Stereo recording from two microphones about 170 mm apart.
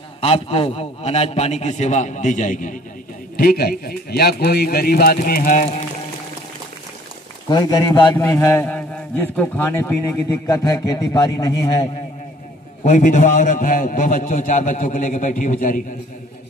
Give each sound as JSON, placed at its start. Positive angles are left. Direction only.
{"t": 0.2, "sound": "a man's voice", "side_deg": 35}
{"t": 3.3, "sound": "speech", "side_deg": 60}
{"t": 7.4, "sound": "a man's voice", "side_deg": 25}
{"t": 12.8, "sound": "a man's voice", "side_deg": 45}